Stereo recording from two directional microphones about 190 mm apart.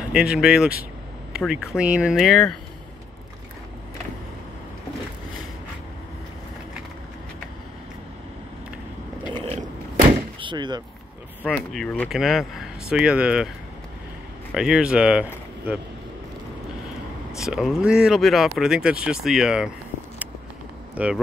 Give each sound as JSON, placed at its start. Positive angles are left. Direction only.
{"t": 0.1, "sound": "speech", "side_deg": -5}
{"t": 9.3, "sound": "a sound", "side_deg": -30}
{"t": 10.4, "sound": "speech", "side_deg": -25}
{"t": 11.4, "sound": "speech", "side_deg": 5}
{"t": 14.5, "sound": "speech", "side_deg": -5}
{"t": 17.4, "sound": "speech", "side_deg": 0}
{"t": 20.9, "sound": "speech", "side_deg": -5}